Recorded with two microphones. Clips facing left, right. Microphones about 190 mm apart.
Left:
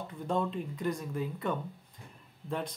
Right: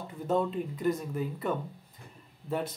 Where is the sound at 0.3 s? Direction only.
5° right (ahead or behind).